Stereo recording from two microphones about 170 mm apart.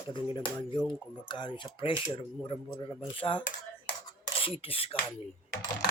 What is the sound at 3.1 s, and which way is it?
Filing, 30° left (ahead or behind).